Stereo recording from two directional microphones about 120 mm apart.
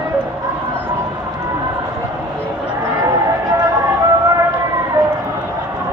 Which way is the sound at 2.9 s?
25° right (ahead or behind).